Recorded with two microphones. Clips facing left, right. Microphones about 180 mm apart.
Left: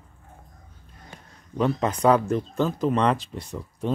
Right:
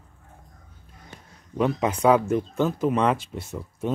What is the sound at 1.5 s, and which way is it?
Speech, 10° right (ahead or behind).